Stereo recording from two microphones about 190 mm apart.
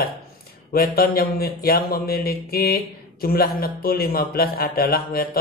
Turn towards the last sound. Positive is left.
turn(degrees=50)  # may be behind; listen again after turning